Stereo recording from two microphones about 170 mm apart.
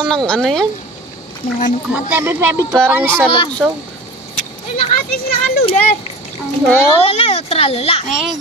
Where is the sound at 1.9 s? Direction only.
15° right (ahead or behind).